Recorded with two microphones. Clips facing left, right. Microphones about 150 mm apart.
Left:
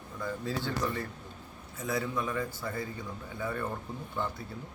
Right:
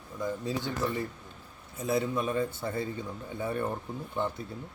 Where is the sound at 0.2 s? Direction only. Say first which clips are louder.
Right 2 dB; 20° right (ahead or behind).